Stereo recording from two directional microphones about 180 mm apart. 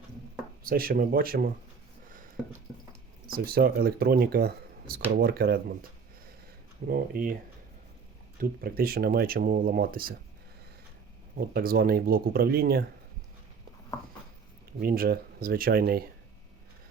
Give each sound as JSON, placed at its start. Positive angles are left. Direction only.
{"t": 0.6, "sound": "speech", "side_deg": -55}
{"t": 3.3, "sound": "speech", "side_deg": -55}
{"t": 6.8, "sound": "speech", "side_deg": -55}
{"t": 8.4, "sound": "speech", "side_deg": -55}
{"t": 11.5, "sound": "speech", "side_deg": -55}
{"t": 14.8, "sound": "speech", "side_deg": -55}